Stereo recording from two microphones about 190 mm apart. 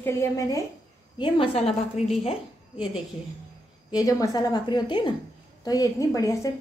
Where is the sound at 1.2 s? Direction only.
30° left (ahead or behind).